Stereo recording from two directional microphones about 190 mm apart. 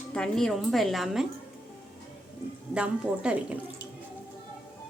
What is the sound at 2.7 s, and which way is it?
Speech, 5° right (ahead or behind).